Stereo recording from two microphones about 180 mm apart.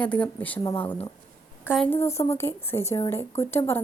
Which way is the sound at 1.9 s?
15° left (ahead or behind).